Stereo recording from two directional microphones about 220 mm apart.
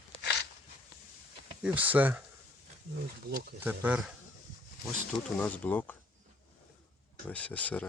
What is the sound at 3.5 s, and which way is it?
Speech, 10° right (ahead or behind).